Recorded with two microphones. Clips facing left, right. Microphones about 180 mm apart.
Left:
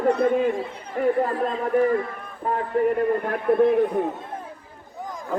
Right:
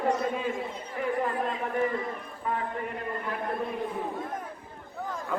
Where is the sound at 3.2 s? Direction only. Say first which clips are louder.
Left 11 dB; 55° left (ahead or behind).